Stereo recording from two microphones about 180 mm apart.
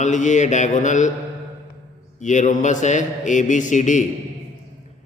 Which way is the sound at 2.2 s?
45° left (ahead or behind).